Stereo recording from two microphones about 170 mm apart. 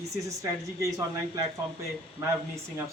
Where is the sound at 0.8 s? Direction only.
20° right (ahead or behind).